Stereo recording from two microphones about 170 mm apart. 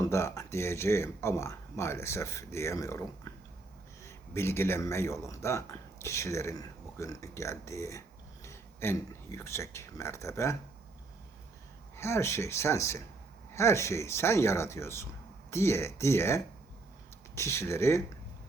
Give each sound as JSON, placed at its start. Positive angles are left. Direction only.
{"t": 0.0, "sound": "speech", "side_deg": 15}
{"t": 4.0, "sound": "speech", "side_deg": 15}
{"t": 11.9, "sound": "speech", "side_deg": 15}